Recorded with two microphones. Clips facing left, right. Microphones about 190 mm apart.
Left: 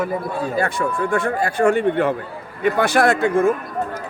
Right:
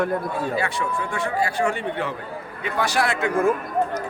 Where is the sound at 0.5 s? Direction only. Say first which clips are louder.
Left 4 dB; 45° left (ahead or behind).